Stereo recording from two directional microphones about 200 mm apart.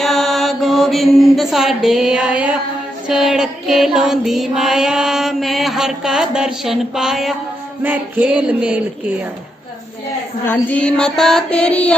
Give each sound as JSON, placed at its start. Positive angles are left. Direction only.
{"t": 0.0, "sound": "mantra", "side_deg": 0}
{"t": 3.1, "sound": "music", "side_deg": 0}
{"t": 7.9, "sound": "speech", "side_deg": -10}
{"t": 10.4, "sound": "music", "side_deg": 10}